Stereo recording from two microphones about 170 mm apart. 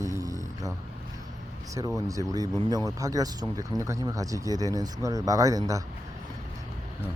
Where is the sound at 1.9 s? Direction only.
20° right (ahead or behind).